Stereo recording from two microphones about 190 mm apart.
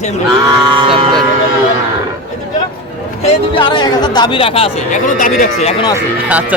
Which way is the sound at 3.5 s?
25° left (ahead or behind).